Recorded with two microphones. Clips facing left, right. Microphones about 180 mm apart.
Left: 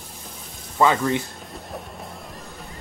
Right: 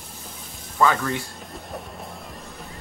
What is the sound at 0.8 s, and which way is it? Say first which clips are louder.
Speech: left 2 dB; 20° left (ahead or behind).